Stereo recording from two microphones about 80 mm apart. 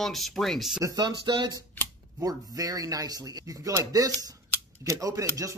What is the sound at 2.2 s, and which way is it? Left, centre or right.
Speech, right.